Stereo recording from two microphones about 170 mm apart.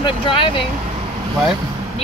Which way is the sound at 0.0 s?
30° left (ahead or behind).